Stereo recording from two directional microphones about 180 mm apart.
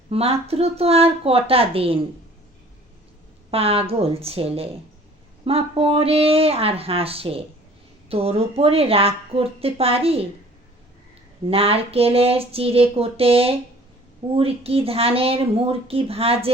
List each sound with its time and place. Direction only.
0.1 s a woman's voice: 35° right (ahead or behind)
3.5 s a woman's voice: 35° right (ahead or behind)
11.4 s a woman's voice: 30° right (ahead or behind)